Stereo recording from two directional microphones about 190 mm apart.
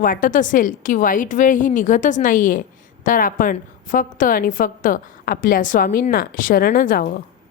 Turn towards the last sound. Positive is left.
turn(degrees=45)  # may be behind; listen again after turning